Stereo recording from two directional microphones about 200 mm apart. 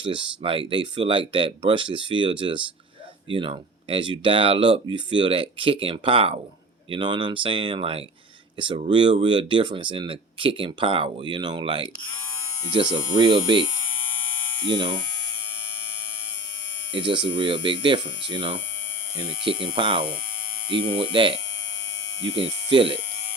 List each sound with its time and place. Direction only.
0.0 s speech: 25° right (ahead or behind)
14.7 s speech: 25° right (ahead or behind)
16.9 s speech: 25° right (ahead or behind)
22.4 s speech: 25° right (ahead or behind)